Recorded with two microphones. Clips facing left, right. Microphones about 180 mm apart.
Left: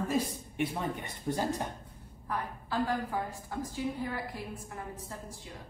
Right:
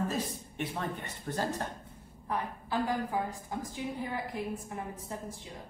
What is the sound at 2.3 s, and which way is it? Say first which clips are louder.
A woman's voice: right 1 dB; 15° right (ahead or behind).